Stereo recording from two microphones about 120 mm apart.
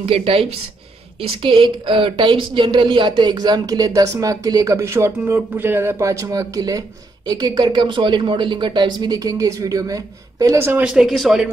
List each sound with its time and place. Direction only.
0.0 s speech: 50° right (ahead or behind); by 10.8 s 20° right (ahead or behind)
10.8 s speech: 5° right (ahead or behind)